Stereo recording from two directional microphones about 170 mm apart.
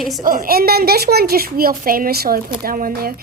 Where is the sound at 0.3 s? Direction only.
55° right (ahead or behind).